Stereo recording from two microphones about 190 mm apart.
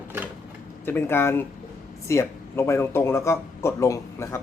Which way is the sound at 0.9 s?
10° left (ahead or behind).